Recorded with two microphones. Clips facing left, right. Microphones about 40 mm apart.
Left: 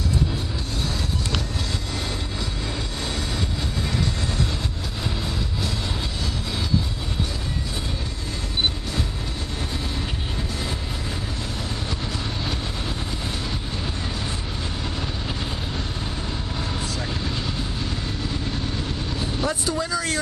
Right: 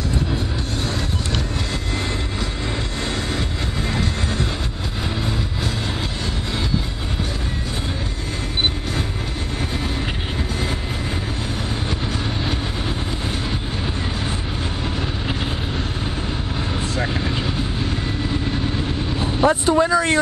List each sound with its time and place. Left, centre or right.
16.9 s vehicle: right